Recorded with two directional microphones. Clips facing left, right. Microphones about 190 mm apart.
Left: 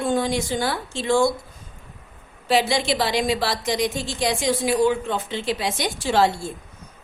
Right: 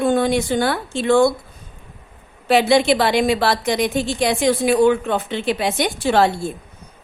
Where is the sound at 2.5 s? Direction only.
60° right (ahead or behind).